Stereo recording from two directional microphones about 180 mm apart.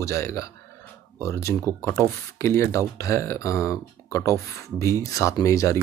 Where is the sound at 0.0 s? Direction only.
15° left (ahead or behind).